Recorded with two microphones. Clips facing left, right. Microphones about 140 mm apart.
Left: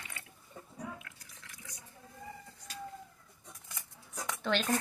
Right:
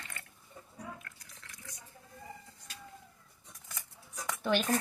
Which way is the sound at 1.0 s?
Centre (ahead or behind).